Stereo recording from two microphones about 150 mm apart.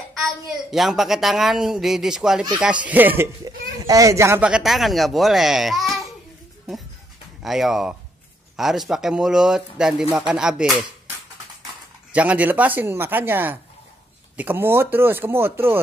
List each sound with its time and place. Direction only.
0.2 s speech: centre (ahead or behind)
3.4 s a child's voice: 25° right (ahead or behind)
4.4 s speech: 5° right (ahead or behind)
7.4 s speech: centre (ahead or behind)
12.1 s speech: 10° right (ahead or behind)